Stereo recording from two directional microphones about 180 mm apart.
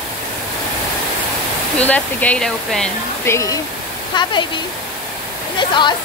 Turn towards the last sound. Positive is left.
turn(degrees=25)  # may be behind; listen again after turning